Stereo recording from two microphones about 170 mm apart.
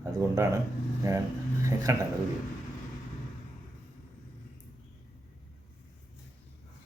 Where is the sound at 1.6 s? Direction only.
15° right (ahead or behind).